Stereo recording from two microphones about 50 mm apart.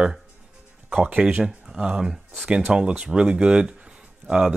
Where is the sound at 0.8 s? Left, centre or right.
Right.